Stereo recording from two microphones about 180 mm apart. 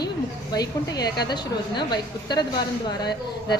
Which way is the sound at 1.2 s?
25° left (ahead or behind).